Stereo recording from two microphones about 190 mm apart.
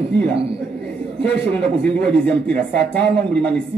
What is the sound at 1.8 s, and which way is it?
Speech, 5° left (ahead or behind).